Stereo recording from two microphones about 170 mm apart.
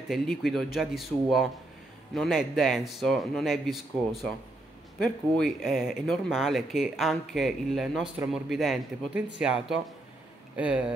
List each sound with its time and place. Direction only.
0.1 s speech: centre (ahead or behind)
4.9 s speech: 5° left (ahead or behind)